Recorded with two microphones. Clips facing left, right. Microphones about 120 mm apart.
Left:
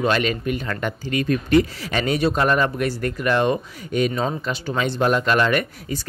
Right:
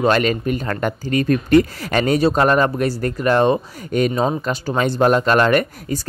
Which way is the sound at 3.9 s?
45° right (ahead or behind).